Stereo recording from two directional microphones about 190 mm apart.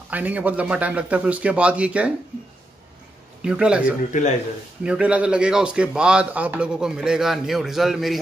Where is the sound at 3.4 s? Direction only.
5° right (ahead or behind).